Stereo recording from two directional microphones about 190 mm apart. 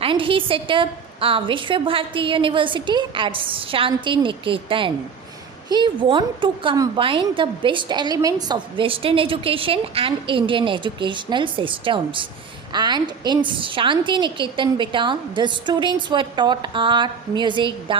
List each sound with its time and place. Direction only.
0.0 s a woman's voice: 25° right (ahead or behind)